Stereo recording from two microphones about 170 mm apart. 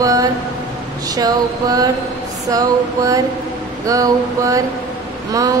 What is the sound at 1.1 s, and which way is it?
A woman's voice, 20° right (ahead or behind).